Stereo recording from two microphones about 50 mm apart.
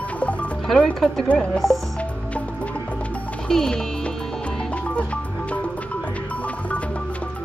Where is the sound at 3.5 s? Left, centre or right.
Centre; by 6.8 s left.